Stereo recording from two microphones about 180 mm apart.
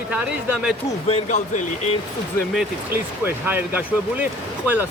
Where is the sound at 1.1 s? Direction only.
40° left (ahead or behind).